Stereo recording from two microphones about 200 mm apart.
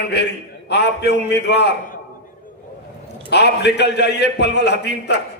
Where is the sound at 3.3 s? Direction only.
60° left (ahead or behind).